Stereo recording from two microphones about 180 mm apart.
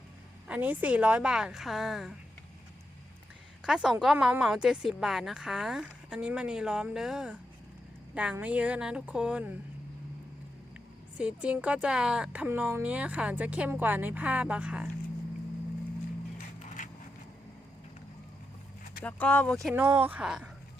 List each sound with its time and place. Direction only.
0.4 s a woman's voice: 10° right (ahead or behind)
3.6 s a woman's voice: 5° right (ahead or behind)
11.2 s a woman's voice: 5° right (ahead or behind)
16.6 s vehicle: 45° left (ahead or behind)
19.0 s speech: 10° left (ahead or behind)
19.7 s a woman's voice: 10° right (ahead or behind)